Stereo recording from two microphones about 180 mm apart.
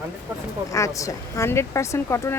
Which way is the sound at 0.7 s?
20° left (ahead or behind).